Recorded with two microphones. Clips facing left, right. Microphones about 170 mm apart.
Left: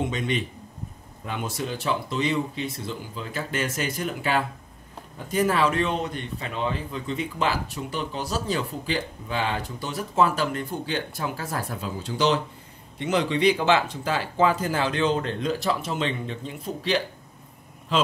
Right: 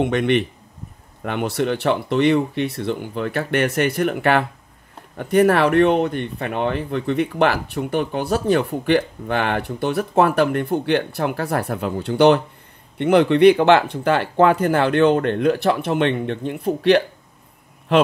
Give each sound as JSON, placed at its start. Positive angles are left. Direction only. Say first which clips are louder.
{"t": 0.0, "sound": "speech", "louder": "right 9 dB", "side_deg": -65}